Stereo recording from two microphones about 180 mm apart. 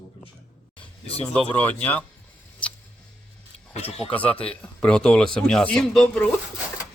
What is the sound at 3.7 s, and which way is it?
Speech, 35° left (ahead or behind).